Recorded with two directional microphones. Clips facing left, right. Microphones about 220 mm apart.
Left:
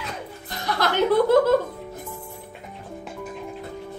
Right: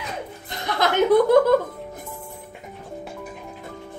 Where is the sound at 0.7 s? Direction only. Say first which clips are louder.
Right 3 dB; 15° right (ahead or behind).